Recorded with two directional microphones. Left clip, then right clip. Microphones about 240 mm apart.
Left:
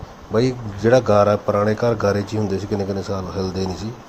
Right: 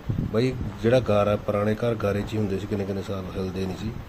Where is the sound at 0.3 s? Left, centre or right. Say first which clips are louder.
Left 6 dB; centre.